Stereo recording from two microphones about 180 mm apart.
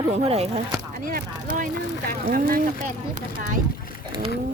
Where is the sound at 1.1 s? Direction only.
50° right (ahead or behind).